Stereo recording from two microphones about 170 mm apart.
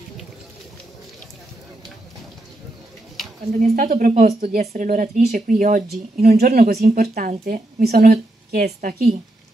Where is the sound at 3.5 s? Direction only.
55° right (ahead or behind).